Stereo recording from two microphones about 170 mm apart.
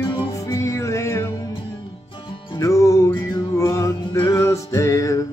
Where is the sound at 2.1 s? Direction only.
30° left (ahead or behind).